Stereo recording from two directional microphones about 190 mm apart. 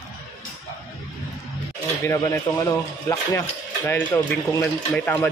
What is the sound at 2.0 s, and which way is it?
Speech, 15° left (ahead or behind).